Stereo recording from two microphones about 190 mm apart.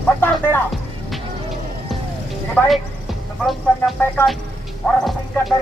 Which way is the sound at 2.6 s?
5° left (ahead or behind).